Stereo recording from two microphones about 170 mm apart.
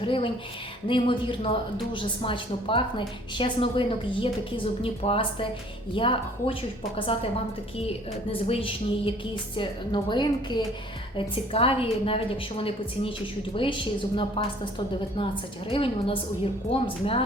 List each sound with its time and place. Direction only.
0.0 s a woman's voice: 30° left (ahead or behind)
8.3 s a woman's voice: 35° left (ahead or behind)
15.7 s a woman's voice: 30° left (ahead or behind)